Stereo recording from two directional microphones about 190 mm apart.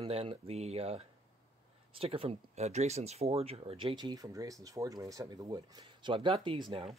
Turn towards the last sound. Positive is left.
turn(degrees=-25)  # may be behind; listen again after turning